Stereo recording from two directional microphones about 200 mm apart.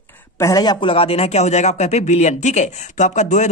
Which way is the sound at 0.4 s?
15° left (ahead or behind).